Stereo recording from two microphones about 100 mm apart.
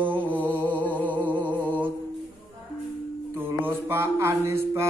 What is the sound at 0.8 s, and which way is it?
Music, 15° left (ahead or behind).